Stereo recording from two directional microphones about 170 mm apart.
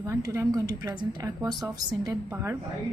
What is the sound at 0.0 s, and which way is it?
Speech, 15° right (ahead or behind).